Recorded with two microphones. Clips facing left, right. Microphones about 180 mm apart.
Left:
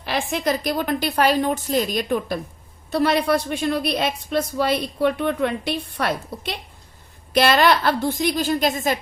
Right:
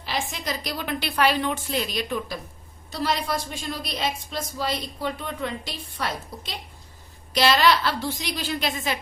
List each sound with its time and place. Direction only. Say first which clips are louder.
0.0 s a woman's voice: left 7 dB; 55° left (ahead or behind)